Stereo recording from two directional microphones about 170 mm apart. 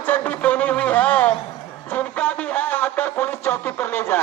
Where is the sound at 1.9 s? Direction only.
10° left (ahead or behind).